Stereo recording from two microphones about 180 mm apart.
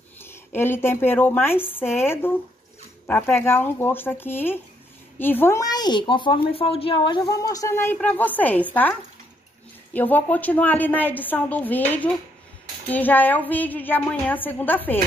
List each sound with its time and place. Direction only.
0.2 s speech: 10° left (ahead or behind)
9.9 s speech: 10° left (ahead or behind)